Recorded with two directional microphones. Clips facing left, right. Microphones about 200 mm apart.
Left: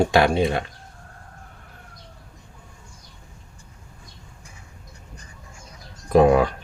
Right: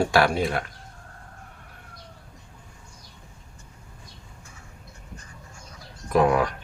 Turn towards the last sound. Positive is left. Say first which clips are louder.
# left 5 dB
turn(degrees=30)  # may be behind; listen again after turning